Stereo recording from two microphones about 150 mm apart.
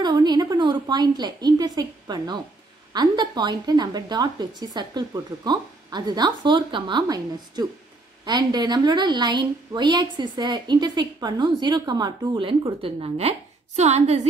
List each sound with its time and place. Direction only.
0.0 s a woman's voice: 30° right (ahead or behind); by 14.2 s 45° right (ahead or behind)